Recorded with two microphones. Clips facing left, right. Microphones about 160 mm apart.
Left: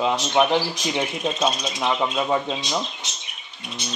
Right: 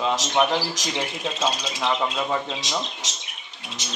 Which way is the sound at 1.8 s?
15° left (ahead or behind).